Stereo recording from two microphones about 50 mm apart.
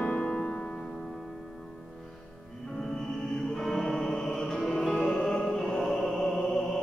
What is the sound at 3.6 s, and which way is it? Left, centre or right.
Music, centre.